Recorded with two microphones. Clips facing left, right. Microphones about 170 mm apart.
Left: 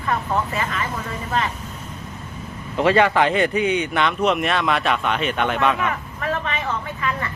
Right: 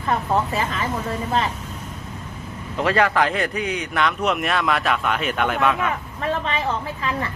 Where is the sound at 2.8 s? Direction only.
Centre (ahead or behind).